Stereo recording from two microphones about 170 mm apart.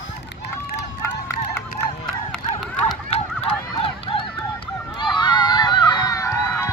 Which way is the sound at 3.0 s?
35° left (ahead or behind).